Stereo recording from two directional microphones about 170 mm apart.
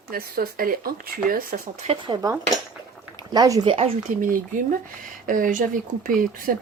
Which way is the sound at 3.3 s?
20° right (ahead or behind).